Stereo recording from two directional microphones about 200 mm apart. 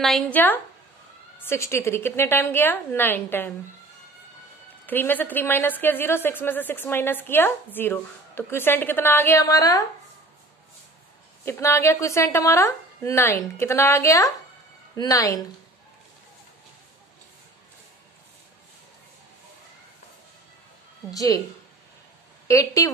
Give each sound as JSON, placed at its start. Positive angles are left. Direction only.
{"t": 0.0, "sound": "a woman's voice", "side_deg": 5}
{"t": 4.8, "sound": "a woman's voice", "side_deg": 10}
{"t": 11.4, "sound": "a woman's voice", "side_deg": 15}
{"t": 21.1, "sound": "a woman's voice", "side_deg": 15}
{"t": 22.5, "sound": "a woman's voice", "side_deg": 15}